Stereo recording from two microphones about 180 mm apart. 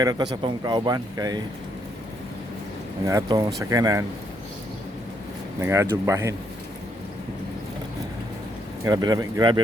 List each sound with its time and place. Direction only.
0.0 s speech: 20° right (ahead or behind)
3.1 s speech: 20° right (ahead or behind)
5.5 s speech: 15° right (ahead or behind)
8.8 s speech: 20° right (ahead or behind)